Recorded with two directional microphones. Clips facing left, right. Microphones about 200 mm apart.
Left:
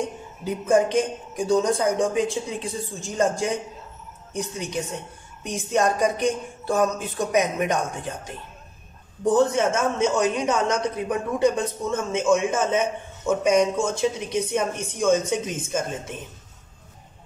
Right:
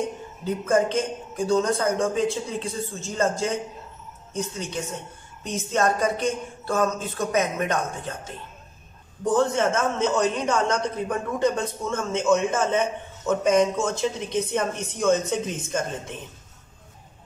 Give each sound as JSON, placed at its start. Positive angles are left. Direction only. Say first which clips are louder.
{"t": 0.4, "sound": "speech", "louder": "left 2 dB", "side_deg": 15}
{"t": 9.6, "sound": "speech", "louder": "left 1 dB", "side_deg": 10}